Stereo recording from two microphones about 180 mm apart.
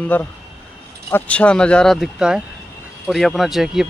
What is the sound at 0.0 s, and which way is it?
Speech, 10° left (ahead or behind).